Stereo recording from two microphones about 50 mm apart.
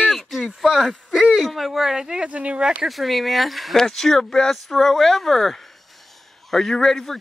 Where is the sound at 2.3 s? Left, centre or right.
Right.